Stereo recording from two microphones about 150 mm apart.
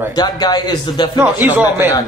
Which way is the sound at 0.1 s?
25° left (ahead or behind).